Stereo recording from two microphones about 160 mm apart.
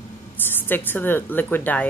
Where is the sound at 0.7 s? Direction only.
10° left (ahead or behind).